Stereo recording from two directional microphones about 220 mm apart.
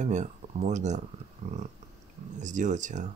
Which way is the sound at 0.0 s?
35° right (ahead or behind).